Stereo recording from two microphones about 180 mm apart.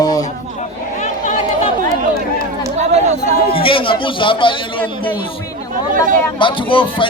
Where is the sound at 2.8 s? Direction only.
40° right (ahead or behind).